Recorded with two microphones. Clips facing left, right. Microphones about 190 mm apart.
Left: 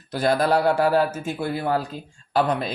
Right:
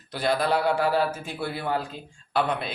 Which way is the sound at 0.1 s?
45° left (ahead or behind).